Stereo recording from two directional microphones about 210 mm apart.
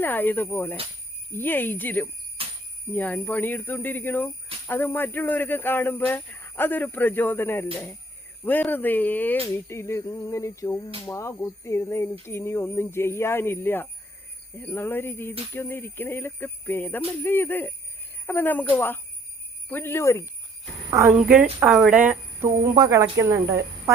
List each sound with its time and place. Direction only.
0.0 s speech: 10° left (ahead or behind)
2.4 s a sound: 30° right (ahead or behind)
2.9 s speech: 10° left (ahead or behind)
20.9 s speech: 10° right (ahead or behind)